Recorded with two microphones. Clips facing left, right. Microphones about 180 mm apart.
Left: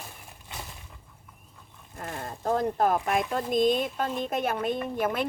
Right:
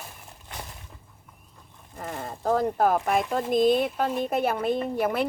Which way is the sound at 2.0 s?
20° right (ahead or behind).